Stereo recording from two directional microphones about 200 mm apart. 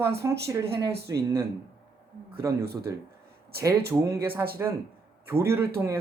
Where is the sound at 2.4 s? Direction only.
15° right (ahead or behind).